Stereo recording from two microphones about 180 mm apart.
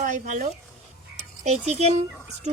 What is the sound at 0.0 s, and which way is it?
Speech, 45° right (ahead or behind).